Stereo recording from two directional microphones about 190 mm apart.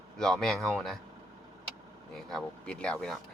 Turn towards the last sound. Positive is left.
turn(degrees=5)  # may be behind; listen again after turning